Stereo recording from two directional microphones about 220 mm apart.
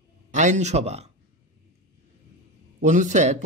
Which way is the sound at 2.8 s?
35° right (ahead or behind).